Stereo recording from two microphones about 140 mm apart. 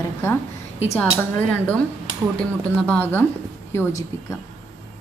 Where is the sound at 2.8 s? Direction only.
10° left (ahead or behind).